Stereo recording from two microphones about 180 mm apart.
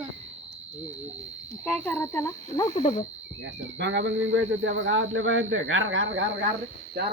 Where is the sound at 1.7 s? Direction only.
10° left (ahead or behind).